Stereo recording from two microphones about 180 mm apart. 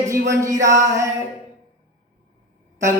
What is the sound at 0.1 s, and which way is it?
Speech, 15° right (ahead or behind).